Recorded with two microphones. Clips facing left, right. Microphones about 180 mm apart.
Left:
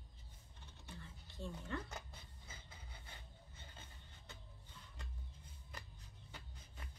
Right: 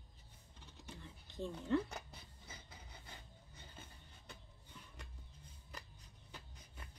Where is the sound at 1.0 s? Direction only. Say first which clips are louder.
Right 6 dB; 15° right (ahead or behind).